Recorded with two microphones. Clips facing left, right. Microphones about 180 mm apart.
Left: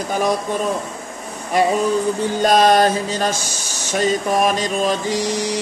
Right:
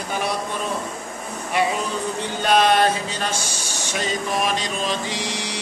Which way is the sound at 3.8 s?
45° left (ahead or behind).